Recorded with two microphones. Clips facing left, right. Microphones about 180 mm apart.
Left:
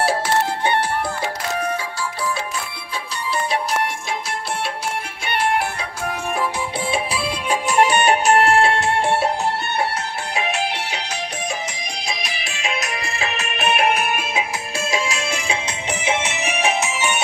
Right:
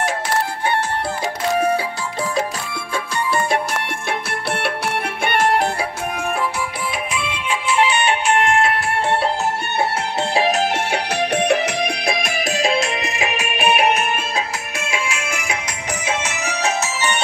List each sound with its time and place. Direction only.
3.2 s music: 55° right (ahead or behind)
4.6 s music: 65° right (ahead or behind); by 5.7 s 45° right (ahead or behind)
6.8 s music: 30° left (ahead or behind)
10.3 s music: 35° right (ahead or behind); by 13.9 s 5° right (ahead or behind)
13.9 s music: 5° left (ahead or behind)
14.8 s music: 35° left (ahead or behind); by 17.2 s 15° left (ahead or behind)